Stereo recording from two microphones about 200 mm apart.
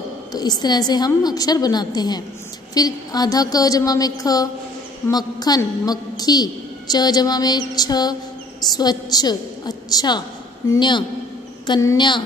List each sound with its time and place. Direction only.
0.3 s a woman's voice: 20° left (ahead or behind)